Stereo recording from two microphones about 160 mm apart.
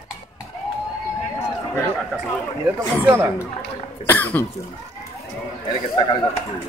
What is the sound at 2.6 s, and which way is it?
Speech, 10° right (ahead or behind).